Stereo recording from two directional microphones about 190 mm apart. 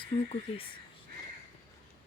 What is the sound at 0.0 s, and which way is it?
Speech, 30° left (ahead or behind).